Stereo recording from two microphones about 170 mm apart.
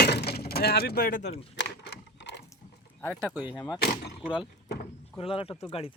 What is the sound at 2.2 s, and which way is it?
Ratchet, 90° left.